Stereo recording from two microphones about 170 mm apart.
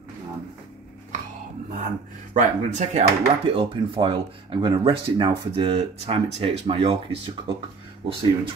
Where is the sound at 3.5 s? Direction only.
30° right (ahead or behind).